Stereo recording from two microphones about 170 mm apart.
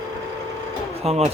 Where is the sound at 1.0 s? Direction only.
40° right (ahead or behind).